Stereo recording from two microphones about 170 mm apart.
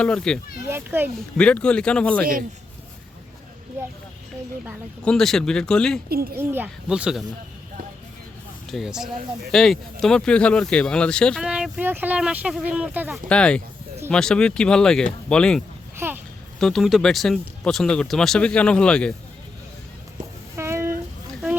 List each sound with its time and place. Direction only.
0.0 s speech: 5° left (ahead or behind)
0.7 s speech: 10° right (ahead or behind)
1.4 s speech: 5° left (ahead or behind)
5.0 s speech: centre (ahead or behind)
6.1 s speech: 65° right (ahead or behind)
6.3 s speech: 10° right (ahead or behind)
8.7 s speech: 5° right (ahead or behind)
11.4 s speech: 5° right (ahead or behind)
13.2 s speech: 5° left (ahead or behind)
16.0 s a sound: 10° right (ahead or behind)
16.6 s speech: centre (ahead or behind)
20.6 s a sound: 15° right (ahead or behind)